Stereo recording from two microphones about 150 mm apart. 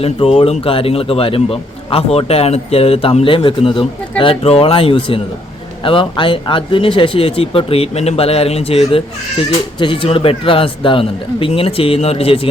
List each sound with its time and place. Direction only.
0.0 s a man's voice: 40° left (ahead or behind)